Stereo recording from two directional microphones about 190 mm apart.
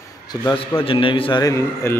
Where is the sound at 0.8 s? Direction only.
25° left (ahead or behind).